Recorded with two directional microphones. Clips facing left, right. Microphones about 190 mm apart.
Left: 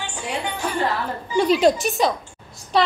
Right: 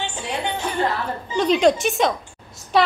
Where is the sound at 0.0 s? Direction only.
20° right (ahead or behind).